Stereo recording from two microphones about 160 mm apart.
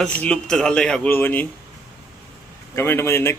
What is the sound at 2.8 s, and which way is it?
Speech, 15° left (ahead or behind).